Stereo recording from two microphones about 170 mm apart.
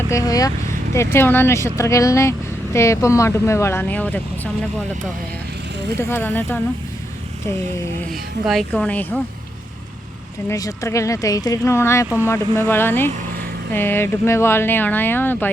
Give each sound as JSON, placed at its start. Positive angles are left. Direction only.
{"t": 0.1, "sound": "speech", "side_deg": 20}
{"t": 6.0, "sound": "speech", "side_deg": 15}
{"t": 8.4, "sound": "speech", "side_deg": 5}
{"t": 10.5, "sound": "speech", "side_deg": 20}